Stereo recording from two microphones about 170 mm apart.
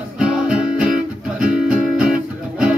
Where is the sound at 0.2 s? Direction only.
5° right (ahead or behind).